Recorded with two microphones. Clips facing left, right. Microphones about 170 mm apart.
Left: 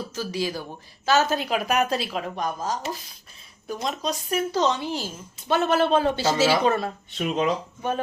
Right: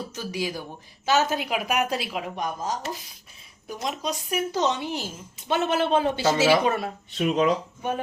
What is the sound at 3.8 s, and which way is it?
A woman's voice, 10° right (ahead or behind).